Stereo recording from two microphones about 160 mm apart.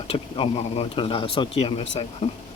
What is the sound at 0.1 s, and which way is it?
Speech, 35° left (ahead or behind).